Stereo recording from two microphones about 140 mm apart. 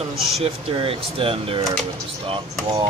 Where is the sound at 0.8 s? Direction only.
40° right (ahead or behind).